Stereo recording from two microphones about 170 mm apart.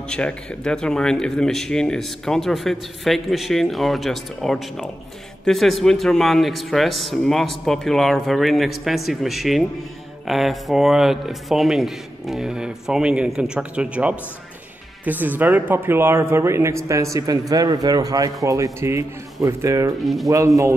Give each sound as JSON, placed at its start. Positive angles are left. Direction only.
{"t": 0.1, "sound": "a man's voice", "side_deg": 5}